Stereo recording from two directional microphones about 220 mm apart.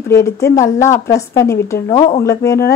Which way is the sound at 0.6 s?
15° left (ahead or behind).